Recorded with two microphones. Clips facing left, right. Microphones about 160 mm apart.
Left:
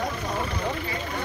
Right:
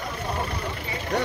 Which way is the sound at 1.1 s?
80° right.